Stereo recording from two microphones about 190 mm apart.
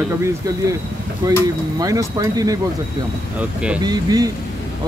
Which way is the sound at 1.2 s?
20° right (ahead or behind).